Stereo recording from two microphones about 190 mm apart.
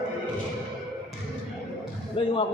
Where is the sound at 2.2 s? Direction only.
30° left (ahead or behind).